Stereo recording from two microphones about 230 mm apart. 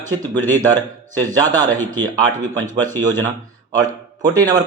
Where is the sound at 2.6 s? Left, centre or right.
Centre.